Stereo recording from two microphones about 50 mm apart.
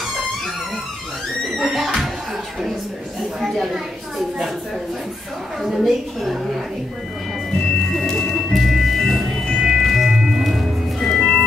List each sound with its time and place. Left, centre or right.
1.6 s music: centre
3.3 s speech: centre
5.6 s a woman's voice: centre
8.1 s music: centre
8.4 s music: centre
9.6 s music: centre
9.8 s music: centre